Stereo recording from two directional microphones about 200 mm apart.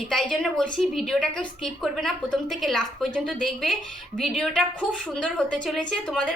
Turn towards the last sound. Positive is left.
turn(degrees=5)  # may be behind; listen again after turning